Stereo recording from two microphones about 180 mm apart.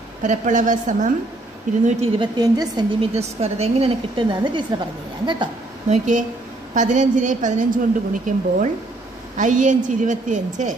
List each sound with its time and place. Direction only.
0.2 s a woman's voice: 45° right (ahead or behind)
2.1 s a woman's voice: 20° right (ahead or behind)
3.2 s a woman's voice: 35° right (ahead or behind)
5.9 s a woman's voice: 45° right (ahead or behind)